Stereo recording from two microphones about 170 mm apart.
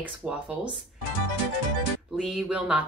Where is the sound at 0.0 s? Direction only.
5° right (ahead or behind).